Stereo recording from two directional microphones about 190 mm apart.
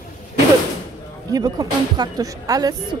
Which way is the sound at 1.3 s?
20° right (ahead or behind).